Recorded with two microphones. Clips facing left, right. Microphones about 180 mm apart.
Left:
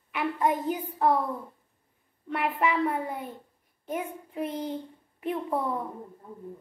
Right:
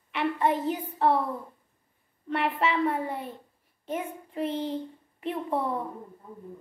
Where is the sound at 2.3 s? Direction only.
5° left (ahead or behind).